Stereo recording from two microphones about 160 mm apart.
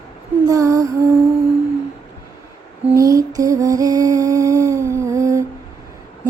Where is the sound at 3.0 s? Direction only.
20° right (ahead or behind).